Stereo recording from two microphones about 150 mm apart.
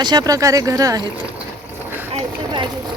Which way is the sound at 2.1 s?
35° right (ahead or behind).